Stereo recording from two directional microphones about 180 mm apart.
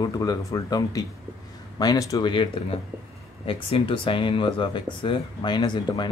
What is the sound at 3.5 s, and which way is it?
A man's voice, 30° left (ahead or behind).